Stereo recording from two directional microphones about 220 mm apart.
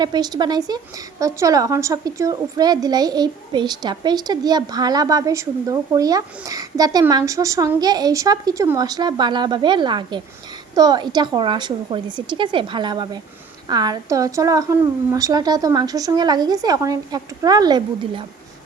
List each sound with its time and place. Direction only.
0.0 s a woman's voice: 20° right (ahead or behind)